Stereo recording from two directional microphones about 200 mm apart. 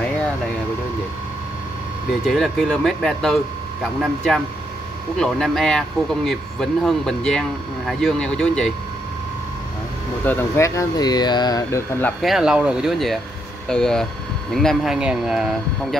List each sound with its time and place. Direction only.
2.2 s speech: centre (ahead or behind)
10.2 s speech: 10° left (ahead or behind)
12.2 s speech: centre (ahead or behind)